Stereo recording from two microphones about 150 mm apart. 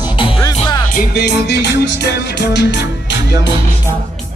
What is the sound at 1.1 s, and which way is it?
Music, 90° left.